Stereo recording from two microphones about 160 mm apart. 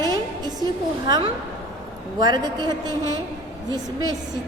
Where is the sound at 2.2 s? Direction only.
25° right (ahead or behind).